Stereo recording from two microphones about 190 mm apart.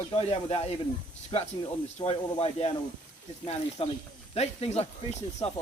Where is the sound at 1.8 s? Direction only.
35° left (ahead or behind).